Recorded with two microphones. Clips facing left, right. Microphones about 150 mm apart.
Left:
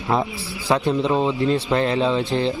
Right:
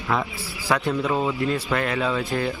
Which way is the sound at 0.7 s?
25° left (ahead or behind).